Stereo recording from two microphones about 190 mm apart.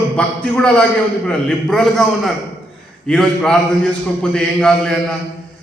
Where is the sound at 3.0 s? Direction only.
5° left (ahead or behind).